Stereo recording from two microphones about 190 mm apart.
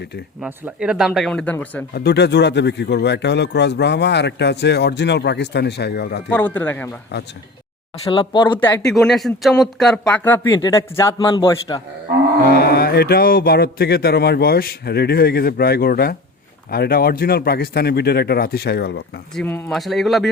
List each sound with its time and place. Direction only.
0.4 s speech: 5° right (ahead or behind)
1.9 s speech: 60° left (ahead or behind)
6.3 s speech: 10° left (ahead or behind)
8.1 s a man's voice: 25° left (ahead or behind)
8.9 s a man's voice: centre (ahead or behind); by 11.8 s 20° left (ahead or behind)
12.5 s speech: 55° left (ahead or behind)
19.4 s speech: 10° left (ahead or behind)
19.8 s speech: centre (ahead or behind)